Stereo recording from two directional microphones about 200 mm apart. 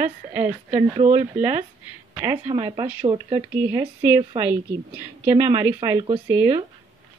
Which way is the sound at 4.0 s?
15° right (ahead or behind).